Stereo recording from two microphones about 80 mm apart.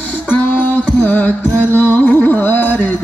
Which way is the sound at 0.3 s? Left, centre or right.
Centre.